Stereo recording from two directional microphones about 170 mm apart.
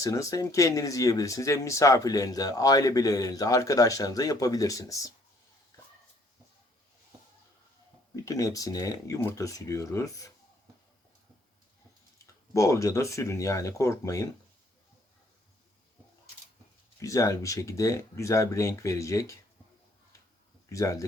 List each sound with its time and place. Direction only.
0.0 s speech: 20° left (ahead or behind)
8.1 s speech: 20° left (ahead or behind)
12.2 s speech: 15° left (ahead or behind)
17.0 s speech: 20° left (ahead or behind)
20.7 s speech: 20° left (ahead or behind)